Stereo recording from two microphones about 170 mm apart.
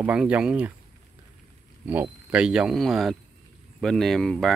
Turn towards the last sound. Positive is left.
turn(degrees=0)  # may be behind; listen again after turning